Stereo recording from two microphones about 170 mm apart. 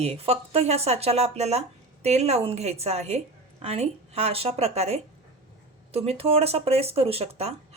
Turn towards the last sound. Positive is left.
turn(degrees=-35)  # may be behind; listen again after turning